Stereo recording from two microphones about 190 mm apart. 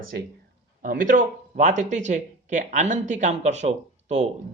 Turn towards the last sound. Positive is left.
turn(degrees=-40)  # may be behind; listen again after turning